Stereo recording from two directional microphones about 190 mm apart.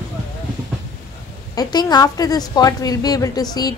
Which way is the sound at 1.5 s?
20° left (ahead or behind).